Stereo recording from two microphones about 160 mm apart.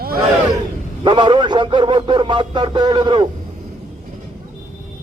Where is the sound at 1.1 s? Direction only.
30° right (ahead or behind).